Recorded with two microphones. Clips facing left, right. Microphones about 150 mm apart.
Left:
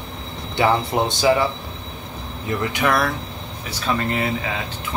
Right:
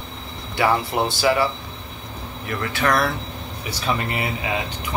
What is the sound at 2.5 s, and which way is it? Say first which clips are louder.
Speech: left 3 dB; 20° left (ahead or behind).